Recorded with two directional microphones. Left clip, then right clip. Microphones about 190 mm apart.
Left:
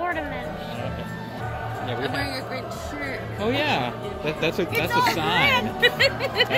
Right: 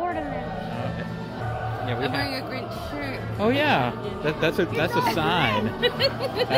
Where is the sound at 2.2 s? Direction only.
45° right (ahead or behind).